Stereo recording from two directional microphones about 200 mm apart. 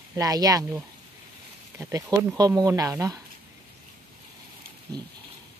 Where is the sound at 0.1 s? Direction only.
20° right (ahead or behind).